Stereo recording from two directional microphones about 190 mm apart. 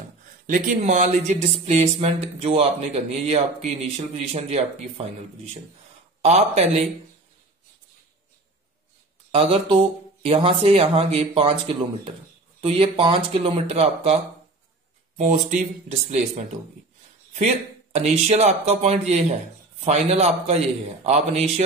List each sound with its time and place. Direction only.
0.5 s speech: 45° right (ahead or behind)
9.3 s speech: 30° right (ahead or behind)